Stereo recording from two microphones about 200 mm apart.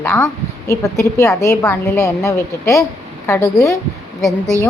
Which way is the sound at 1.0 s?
15° left (ahead or behind).